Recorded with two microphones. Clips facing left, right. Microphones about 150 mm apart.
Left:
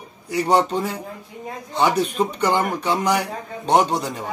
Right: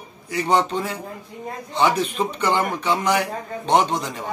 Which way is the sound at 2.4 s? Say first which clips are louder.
Even; 10° left (ahead or behind).